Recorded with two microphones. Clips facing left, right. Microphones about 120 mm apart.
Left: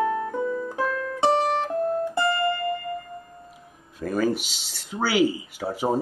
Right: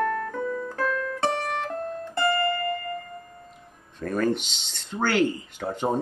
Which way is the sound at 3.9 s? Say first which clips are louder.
Left 1 dB; 5° left (ahead or behind).